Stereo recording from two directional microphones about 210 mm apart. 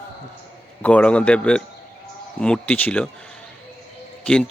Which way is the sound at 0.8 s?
5° left (ahead or behind).